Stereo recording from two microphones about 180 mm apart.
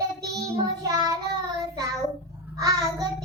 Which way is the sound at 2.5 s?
20° right (ahead or behind).